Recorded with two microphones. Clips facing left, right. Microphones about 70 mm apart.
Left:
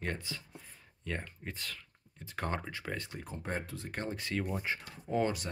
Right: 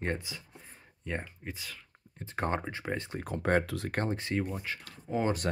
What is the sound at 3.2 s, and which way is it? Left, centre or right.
Speech, right.